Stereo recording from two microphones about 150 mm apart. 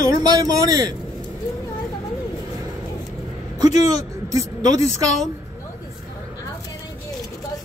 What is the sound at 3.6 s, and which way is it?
Speech, 45° left (ahead or behind).